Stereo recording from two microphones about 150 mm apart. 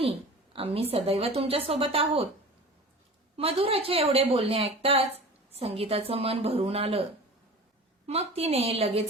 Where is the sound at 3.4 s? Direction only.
40° right (ahead or behind).